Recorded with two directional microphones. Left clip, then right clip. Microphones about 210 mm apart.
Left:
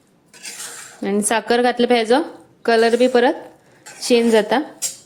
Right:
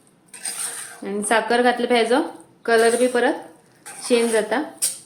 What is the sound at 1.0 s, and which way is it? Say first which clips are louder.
A woman's voice: left 1 dB; 40° left (ahead or behind).